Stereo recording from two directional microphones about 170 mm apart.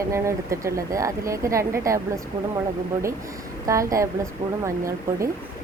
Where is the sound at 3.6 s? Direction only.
20° right (ahead or behind).